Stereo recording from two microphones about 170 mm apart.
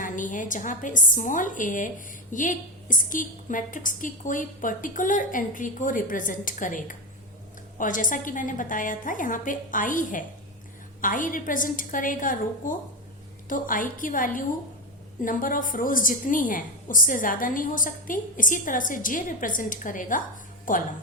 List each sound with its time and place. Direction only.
0.0 s a woman's voice: 50° left (ahead or behind)